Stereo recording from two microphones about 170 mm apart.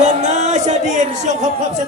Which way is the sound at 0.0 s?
45° right (ahead or behind).